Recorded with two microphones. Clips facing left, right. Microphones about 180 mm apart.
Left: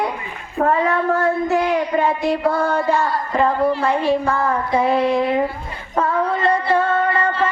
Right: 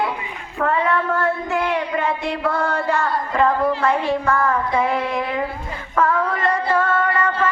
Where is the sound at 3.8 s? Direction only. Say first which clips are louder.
Left 1 dB; 30° left (ahead or behind).